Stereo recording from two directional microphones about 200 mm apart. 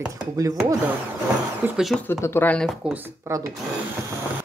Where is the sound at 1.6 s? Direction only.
Centre (ahead or behind).